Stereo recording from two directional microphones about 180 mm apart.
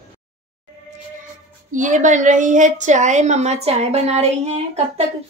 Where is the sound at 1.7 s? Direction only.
45° right (ahead or behind).